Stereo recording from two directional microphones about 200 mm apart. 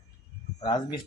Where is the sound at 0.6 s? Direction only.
20° left (ahead or behind).